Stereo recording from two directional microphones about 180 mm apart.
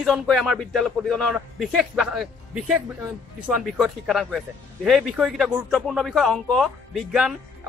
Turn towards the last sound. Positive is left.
turn(degrees=0)  # may be behind; listen again after turning